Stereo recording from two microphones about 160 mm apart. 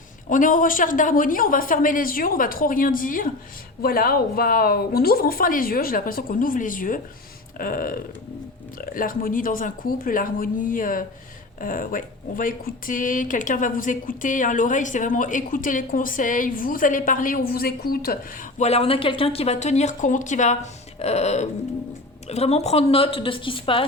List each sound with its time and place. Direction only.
0.3 s speech: 55° left (ahead or behind)
18.6 s a woman's voice: 40° left (ahead or behind)